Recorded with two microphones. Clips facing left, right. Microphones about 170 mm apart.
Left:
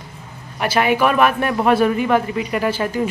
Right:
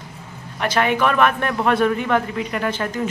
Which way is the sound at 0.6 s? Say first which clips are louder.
Left 2 dB; 10° left (ahead or behind).